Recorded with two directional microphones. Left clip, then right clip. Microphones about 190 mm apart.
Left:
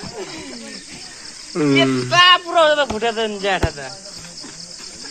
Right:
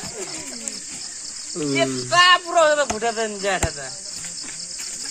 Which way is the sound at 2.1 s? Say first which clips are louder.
Left 2 dB; 55° right (ahead or behind).